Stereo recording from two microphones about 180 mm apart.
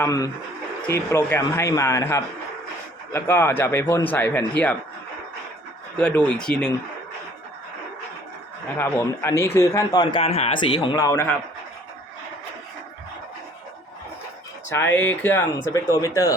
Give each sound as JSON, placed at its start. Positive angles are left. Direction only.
{"t": 0.0, "sound": "speech", "side_deg": 20}
{"t": 6.0, "sound": "speech", "side_deg": 5}
{"t": 8.8, "sound": "speech", "side_deg": 15}
{"t": 10.8, "sound": "speech", "side_deg": 20}
{"t": 14.7, "sound": "speech", "side_deg": 15}